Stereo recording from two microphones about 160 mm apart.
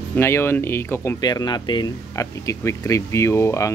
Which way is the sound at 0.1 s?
15° left (ahead or behind).